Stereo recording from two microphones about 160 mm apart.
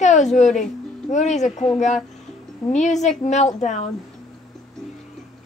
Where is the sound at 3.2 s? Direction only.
45° left (ahead or behind).